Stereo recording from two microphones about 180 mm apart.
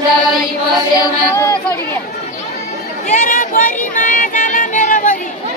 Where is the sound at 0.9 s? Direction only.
15° left (ahead or behind).